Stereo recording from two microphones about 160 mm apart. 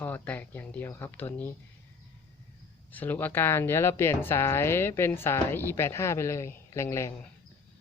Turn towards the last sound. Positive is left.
turn(degrees=20)  # may be behind; listen again after turning